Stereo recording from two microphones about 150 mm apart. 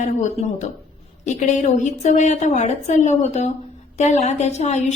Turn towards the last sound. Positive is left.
turn(degrees=50)  # may be behind; listen again after turning